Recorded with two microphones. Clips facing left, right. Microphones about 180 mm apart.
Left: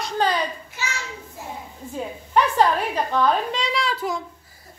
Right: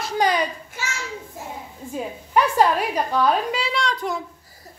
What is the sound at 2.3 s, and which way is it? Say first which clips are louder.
A woman's voice: right 1 dB; 10° right (ahead or behind).